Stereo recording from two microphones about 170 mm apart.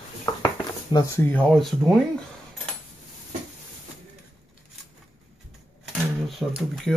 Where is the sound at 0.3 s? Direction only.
25° left (ahead or behind).